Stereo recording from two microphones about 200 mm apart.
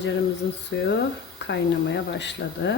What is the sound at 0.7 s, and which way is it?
Speech, 60° left (ahead or behind).